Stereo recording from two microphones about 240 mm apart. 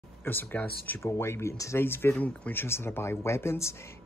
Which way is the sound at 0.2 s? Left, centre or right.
Centre.